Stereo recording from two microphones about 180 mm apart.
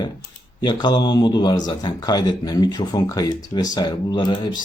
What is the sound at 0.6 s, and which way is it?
Speech, 25° left (ahead or behind).